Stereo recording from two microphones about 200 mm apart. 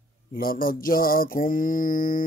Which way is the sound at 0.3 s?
45° left (ahead or behind).